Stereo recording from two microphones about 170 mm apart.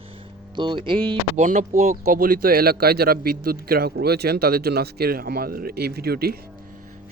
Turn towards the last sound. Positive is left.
turn(degrees=-65)  # may be behind; listen again after turning